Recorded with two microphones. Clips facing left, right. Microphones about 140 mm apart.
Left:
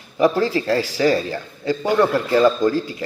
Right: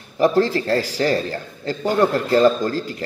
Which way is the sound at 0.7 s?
45° right (ahead or behind).